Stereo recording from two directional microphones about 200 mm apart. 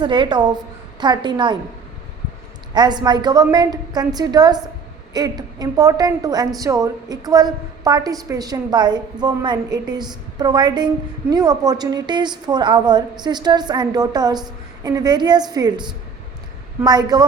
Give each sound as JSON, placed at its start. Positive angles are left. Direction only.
{"t": 0.0, "sound": "a woman's voice", "side_deg": -25}
{"t": 2.7, "sound": "a woman's voice", "side_deg": -20}